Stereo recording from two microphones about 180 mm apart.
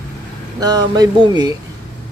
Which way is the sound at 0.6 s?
20° right (ahead or behind).